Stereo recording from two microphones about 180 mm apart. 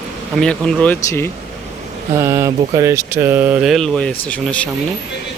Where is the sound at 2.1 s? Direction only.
15° right (ahead or behind); by 4.7 s 5° left (ahead or behind).